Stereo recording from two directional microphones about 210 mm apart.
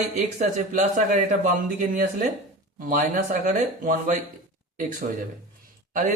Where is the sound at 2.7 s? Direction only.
40° right (ahead or behind).